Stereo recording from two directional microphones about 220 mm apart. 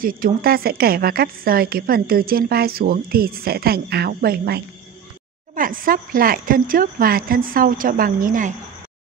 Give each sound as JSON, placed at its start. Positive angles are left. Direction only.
{"t": 0.0, "sound": "a woman's voice", "side_deg": -40}